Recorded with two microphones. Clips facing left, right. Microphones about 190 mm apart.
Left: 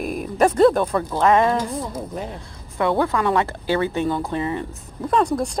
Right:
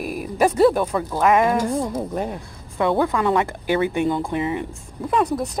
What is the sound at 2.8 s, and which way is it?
Speech, 15° right (ahead or behind).